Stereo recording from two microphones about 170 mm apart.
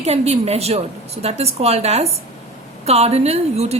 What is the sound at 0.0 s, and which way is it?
A woman's voice, 40° right (ahead or behind).